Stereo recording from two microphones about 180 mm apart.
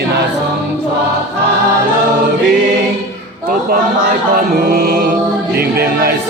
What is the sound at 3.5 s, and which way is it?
Speech, 55° right (ahead or behind).